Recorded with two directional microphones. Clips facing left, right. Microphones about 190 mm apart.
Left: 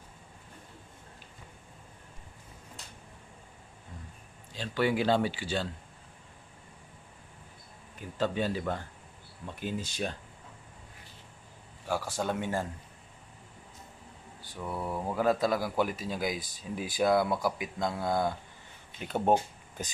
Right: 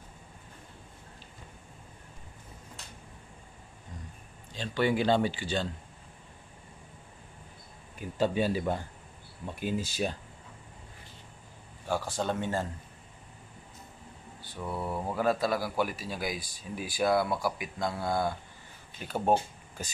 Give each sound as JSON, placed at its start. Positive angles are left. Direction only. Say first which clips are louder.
{"t": 4.6, "sound": "speech", "louder": "right 1 dB", "side_deg": 5}
{"t": 8.2, "sound": "a man's voice", "louder": "right 3 dB", "side_deg": -10}
{"t": 11.9, "sound": "speech", "louder": "right 1 dB", "side_deg": 10}
{"t": 14.6, "sound": "a man's voice", "louder": "even", "side_deg": -10}
{"t": 15.1, "sound": "speech", "louder": "left 1 dB", "side_deg": 15}